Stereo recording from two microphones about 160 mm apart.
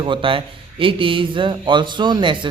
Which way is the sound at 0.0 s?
35° right (ahead or behind).